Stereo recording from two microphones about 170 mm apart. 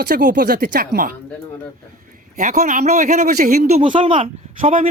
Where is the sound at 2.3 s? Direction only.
45° right (ahead or behind).